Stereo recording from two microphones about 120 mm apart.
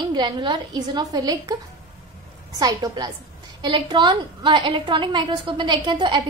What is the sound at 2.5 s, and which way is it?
A woman's voice, 30° right (ahead or behind).